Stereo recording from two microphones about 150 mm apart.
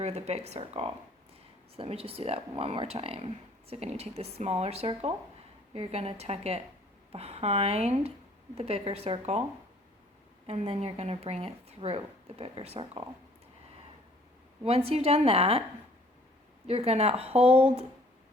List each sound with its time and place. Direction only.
0.0 s speech: 45° right (ahead or behind)
10.4 s speech: 45° right (ahead or behind)
14.6 s a woman's voice: 40° right (ahead or behind)
16.6 s a woman's voice: 40° right (ahead or behind)